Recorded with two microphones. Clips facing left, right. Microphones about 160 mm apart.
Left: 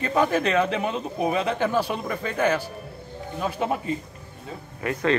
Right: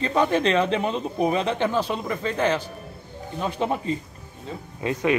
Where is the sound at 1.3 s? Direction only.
30° right (ahead or behind).